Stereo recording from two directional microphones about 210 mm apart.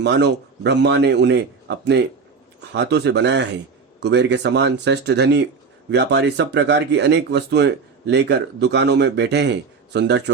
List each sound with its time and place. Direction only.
0.0 s speech: 55° right (ahead or behind)